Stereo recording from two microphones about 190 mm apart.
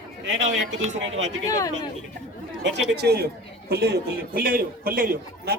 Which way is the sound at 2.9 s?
55° right (ahead or behind).